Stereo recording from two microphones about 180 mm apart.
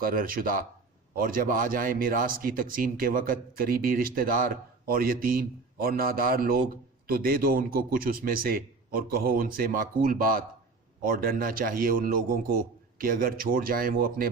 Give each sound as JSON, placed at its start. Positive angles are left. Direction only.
{"t": 0.0, "sound": "a man's voice", "side_deg": -50}